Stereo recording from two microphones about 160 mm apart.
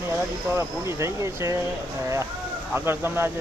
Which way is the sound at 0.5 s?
20° right (ahead or behind).